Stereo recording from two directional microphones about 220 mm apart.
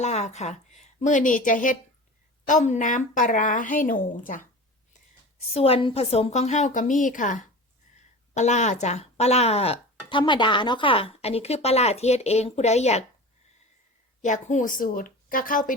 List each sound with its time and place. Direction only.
0.0 s speech: 30° left (ahead or behind)
5.5 s speech: 25° left (ahead or behind)
14.2 s speech: 35° left (ahead or behind)